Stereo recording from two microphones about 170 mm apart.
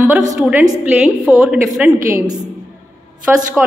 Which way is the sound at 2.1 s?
15° right (ahead or behind).